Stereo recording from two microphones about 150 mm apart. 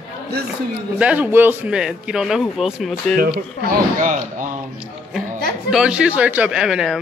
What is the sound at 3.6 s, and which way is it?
Speech, 60° right (ahead or behind).